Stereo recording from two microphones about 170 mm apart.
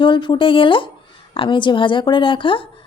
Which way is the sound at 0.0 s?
30° left (ahead or behind).